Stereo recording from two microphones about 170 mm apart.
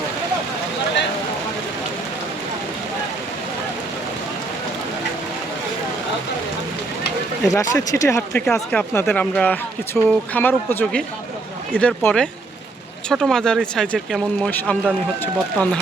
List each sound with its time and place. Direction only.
7.4 s speech: 20° left (ahead or behind)
8.4 s speech: 5° left (ahead or behind)